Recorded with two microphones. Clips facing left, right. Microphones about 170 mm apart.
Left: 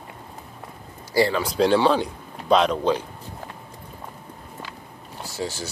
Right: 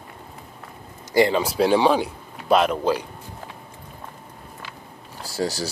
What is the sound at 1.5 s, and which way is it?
Speech, 10° right (ahead or behind).